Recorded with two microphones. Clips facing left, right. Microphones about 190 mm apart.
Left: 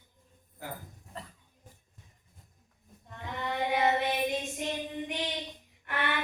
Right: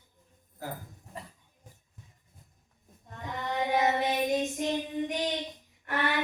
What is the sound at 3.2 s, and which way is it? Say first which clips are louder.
Child singing: right 1 dB; 45° right (ahead or behind).